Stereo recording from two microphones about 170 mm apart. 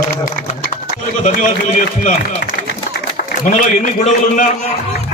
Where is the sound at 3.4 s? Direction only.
50° left (ahead or behind).